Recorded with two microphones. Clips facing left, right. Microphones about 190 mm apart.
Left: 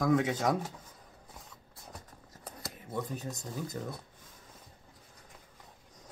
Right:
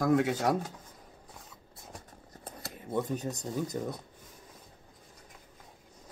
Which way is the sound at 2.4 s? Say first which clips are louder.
Right 2 dB; 25° right (ahead or behind).